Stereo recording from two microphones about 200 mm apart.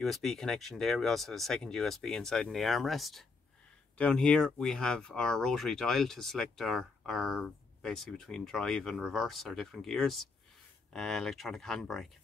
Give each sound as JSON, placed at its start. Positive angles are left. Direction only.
{"t": 0.0, "sound": "speech", "side_deg": 0}